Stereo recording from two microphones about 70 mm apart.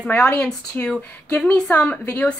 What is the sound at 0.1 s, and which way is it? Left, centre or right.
Speech, centre.